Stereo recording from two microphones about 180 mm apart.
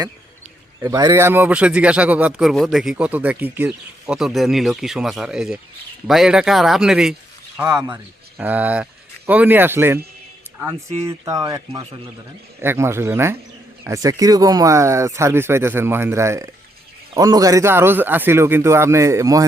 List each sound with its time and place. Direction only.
0.8 s speech: 20° right (ahead or behind)
7.7 s speech: 20° right (ahead or behind)
8.4 s speech: 10° right (ahead or behind)
11.0 s speech: 15° right (ahead or behind)
11.7 s speech: 35° right (ahead or behind)
12.6 s speech: 15° right (ahead or behind)